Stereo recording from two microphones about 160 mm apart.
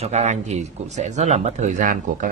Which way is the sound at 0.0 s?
45° right (ahead or behind).